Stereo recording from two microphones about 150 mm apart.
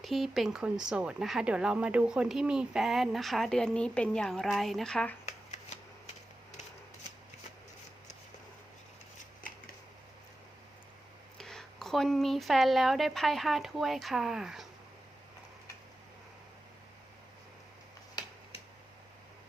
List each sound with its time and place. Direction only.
0.0 s speech: centre (ahead or behind)
11.3 s speech: 5° left (ahead or behind)
18.1 s finger snapping: 30° left (ahead or behind)